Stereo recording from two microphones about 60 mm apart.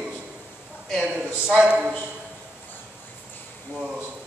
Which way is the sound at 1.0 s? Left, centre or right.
Centre.